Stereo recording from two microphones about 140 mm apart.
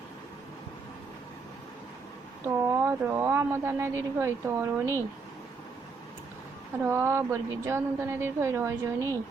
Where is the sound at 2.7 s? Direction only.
15° right (ahead or behind).